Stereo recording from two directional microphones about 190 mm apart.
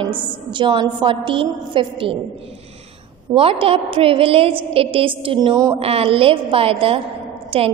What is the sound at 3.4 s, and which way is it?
A woman's voice, 30° right (ahead or behind).